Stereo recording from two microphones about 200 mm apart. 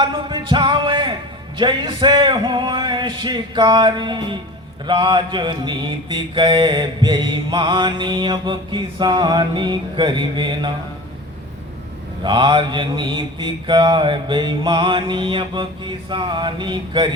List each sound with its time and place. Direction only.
0.0 s music: 25° right (ahead or behind)
1.5 s mantra: 25° right (ahead or behind)
12.2 s mantra: 25° right (ahead or behind)